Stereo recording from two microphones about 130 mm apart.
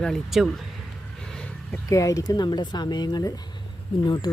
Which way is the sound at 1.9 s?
25° left (ahead or behind).